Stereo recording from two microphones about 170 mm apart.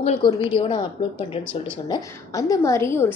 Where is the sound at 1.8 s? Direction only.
20° left (ahead or behind).